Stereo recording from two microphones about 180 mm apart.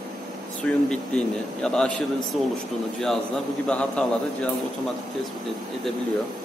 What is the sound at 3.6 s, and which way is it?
Speech, 5° left (ahead or behind).